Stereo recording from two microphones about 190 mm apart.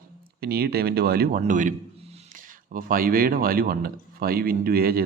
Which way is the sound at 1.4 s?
45° right (ahead or behind).